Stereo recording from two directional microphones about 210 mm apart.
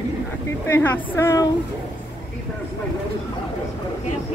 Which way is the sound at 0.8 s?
10° left (ahead or behind).